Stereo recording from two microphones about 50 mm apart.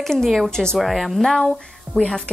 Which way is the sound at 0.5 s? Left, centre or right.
Centre.